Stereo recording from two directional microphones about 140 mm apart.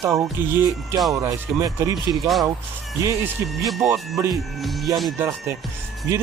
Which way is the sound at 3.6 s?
Centre (ahead or behind).